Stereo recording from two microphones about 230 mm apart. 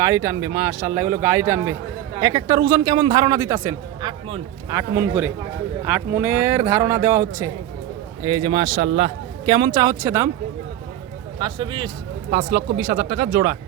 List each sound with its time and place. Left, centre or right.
0.0 s a man's voice: centre
11.3 s a man's voice: right
12.3 s speech: right